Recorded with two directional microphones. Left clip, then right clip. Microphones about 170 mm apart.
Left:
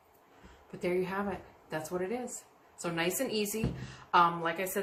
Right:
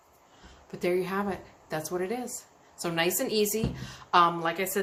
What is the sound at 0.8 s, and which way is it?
A woman's voice, 50° right (ahead or behind).